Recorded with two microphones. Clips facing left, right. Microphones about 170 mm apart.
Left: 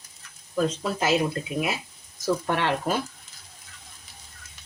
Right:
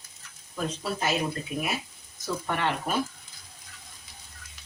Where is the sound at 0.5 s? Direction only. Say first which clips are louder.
Left 6 dB; 90° left.